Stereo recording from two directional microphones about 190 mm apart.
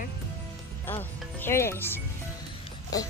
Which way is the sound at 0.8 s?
10° left (ahead or behind).